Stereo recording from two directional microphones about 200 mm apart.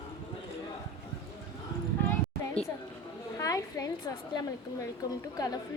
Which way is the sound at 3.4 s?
15° left (ahead or behind).